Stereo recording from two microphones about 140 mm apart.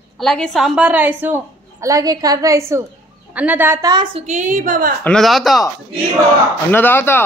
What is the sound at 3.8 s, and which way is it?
Speech, 35° right (ahead or behind).